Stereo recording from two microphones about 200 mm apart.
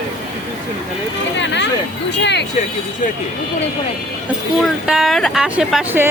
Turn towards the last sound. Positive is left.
turn(degrees=-5)  # may be behind; listen again after turning